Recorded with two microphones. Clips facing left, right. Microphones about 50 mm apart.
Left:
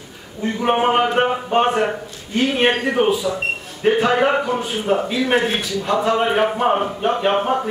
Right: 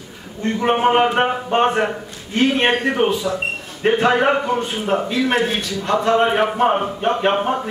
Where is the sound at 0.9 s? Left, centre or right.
Centre.